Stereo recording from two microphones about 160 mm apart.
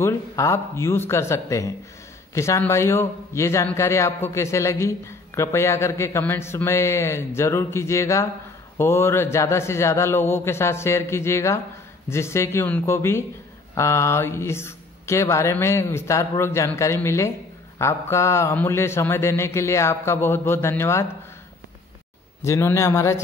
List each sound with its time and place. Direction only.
0.0 s a man's voice: 20° left (ahead or behind)
22.4 s a man's voice: 15° left (ahead or behind)